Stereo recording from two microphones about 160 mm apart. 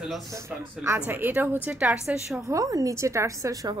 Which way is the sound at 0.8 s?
10° right (ahead or behind).